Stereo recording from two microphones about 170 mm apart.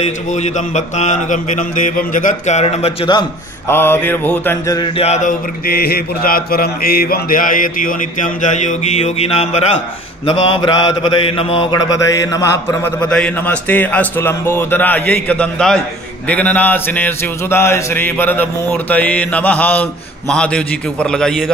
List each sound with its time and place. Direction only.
0.3 s mantra: 45° left (ahead or behind)
3.6 s mantra: 15° left (ahead or behind)
4.7 s mantra: 30° left (ahead or behind)
5.7 s mantra: 65° left (ahead or behind); by 11.7 s 30° left (ahead or behind)
12.1 s mantra: 15° left (ahead or behind)
13.0 s mantra: 5° left (ahead or behind)